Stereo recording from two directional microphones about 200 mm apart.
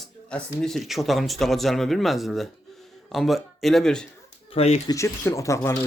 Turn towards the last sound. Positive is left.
turn(degrees=15)  # may be behind; listen again after turning